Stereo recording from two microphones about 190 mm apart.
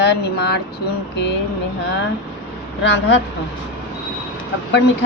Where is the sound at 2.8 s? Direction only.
65° left (ahead or behind).